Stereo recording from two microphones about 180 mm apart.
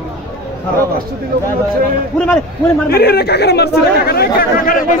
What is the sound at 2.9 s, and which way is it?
Speech, 60° left (ahead or behind).